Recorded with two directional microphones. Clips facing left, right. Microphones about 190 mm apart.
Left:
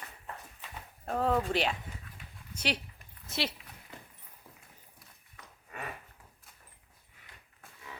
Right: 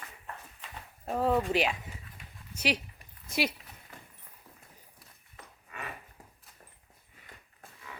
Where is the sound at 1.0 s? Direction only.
10° right (ahead or behind).